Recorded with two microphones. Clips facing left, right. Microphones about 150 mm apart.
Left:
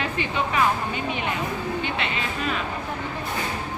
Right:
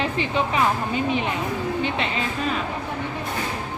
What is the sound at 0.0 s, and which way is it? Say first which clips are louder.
Speech: right 3 dB; 30° right (ahead or behind).